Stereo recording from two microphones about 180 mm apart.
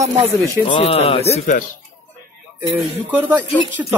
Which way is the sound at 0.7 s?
35° left (ahead or behind).